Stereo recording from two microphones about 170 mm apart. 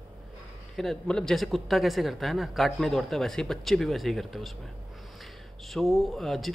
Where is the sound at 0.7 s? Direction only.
5° left (ahead or behind).